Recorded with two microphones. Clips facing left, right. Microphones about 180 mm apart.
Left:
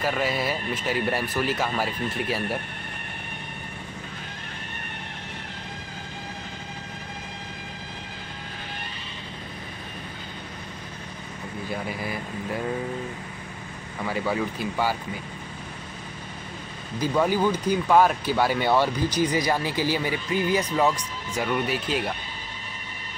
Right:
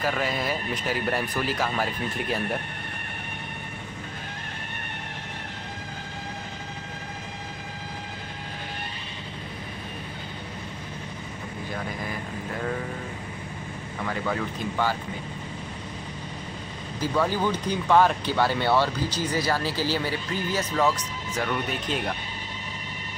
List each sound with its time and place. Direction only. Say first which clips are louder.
0.0 s speech: left 1 dB; 5° left (ahead or behind)
11.7 s speech: left 2 dB; 10° left (ahead or behind)
14.0 s speech: left 2 dB; 10° left (ahead or behind)
17.0 s speech: left 3 dB; 15° left (ahead or behind)